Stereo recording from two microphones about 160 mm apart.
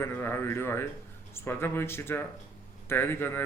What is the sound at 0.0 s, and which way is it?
A man's voice, 15° left (ahead or behind).